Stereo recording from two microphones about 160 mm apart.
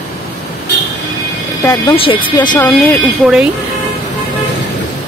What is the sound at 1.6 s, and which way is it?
Speech, 20° left (ahead or behind).